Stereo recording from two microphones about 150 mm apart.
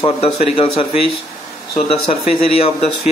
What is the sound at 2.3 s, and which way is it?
Speech, 40° left (ahead or behind).